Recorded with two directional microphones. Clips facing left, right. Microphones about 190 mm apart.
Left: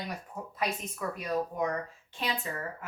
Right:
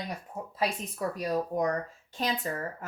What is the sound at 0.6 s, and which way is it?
Speech, 35° right (ahead or behind).